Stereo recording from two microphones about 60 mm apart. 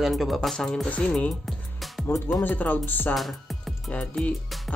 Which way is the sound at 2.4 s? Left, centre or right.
Left.